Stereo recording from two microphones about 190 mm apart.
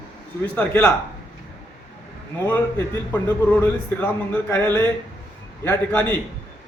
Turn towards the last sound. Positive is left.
turn(degrees=10)  # may be behind; listen again after turning